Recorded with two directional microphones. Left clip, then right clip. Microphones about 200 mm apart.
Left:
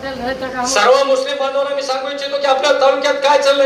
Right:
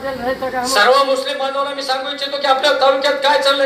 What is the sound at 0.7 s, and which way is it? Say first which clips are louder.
A man's voice: left 1 dB; 5° right (ahead or behind).